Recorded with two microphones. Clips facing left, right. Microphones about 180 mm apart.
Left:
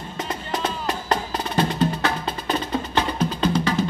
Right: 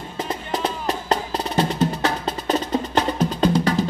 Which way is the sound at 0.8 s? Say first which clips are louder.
Right 1 dB; 35° right (ahead or behind).